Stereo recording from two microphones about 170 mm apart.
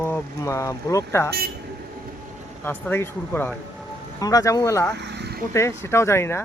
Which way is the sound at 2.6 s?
10° left (ahead or behind).